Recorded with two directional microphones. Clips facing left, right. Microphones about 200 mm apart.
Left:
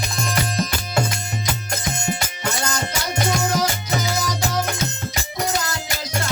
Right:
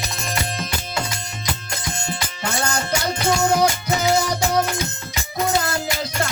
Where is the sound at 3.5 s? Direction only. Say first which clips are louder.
Right 3 dB; 60° right (ahead or behind).